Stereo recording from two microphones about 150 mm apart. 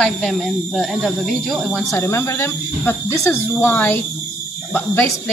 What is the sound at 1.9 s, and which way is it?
A woman's voice, 15° left (ahead or behind).